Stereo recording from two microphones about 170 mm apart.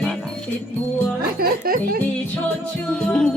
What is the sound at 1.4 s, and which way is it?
Music, 60° right (ahead or behind).